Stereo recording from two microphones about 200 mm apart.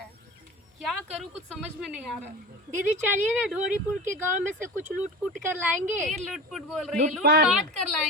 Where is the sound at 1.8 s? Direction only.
Centre (ahead or behind).